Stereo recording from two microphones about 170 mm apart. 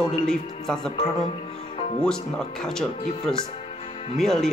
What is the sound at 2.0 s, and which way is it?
Speech, 5° left (ahead or behind).